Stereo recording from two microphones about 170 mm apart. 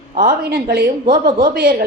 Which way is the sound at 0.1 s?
55° right (ahead or behind).